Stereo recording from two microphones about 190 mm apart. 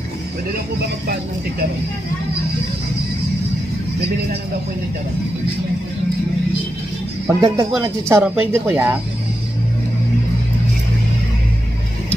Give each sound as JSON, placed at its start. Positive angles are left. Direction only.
{"t": 7.2, "sound": "speech", "side_deg": -15}